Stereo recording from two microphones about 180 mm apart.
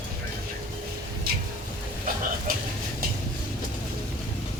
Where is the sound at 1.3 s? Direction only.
55° right (ahead or behind).